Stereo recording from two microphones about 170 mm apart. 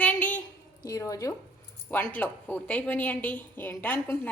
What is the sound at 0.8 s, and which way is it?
A woman's voice, 20° left (ahead or behind).